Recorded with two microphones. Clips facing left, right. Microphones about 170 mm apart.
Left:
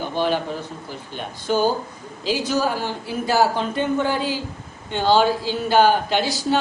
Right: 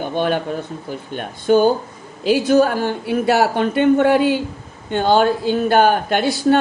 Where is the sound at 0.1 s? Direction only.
55° right (ahead or behind).